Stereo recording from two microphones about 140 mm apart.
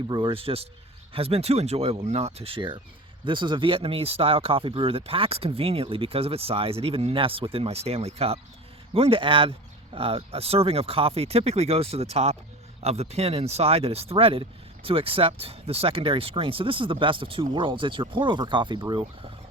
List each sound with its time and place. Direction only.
0.1 s speech: 40° right (ahead or behind)